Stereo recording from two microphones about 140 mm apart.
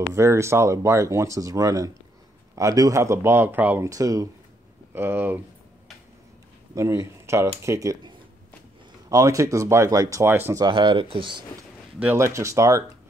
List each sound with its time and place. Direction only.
0.1 s speech: 20° right (ahead or behind)
6.7 s a man's voice: 20° right (ahead or behind)
9.1 s speech: 25° right (ahead or behind)
10.6 s speech: 35° right (ahead or behind)
12.0 s speech: 15° right (ahead or behind)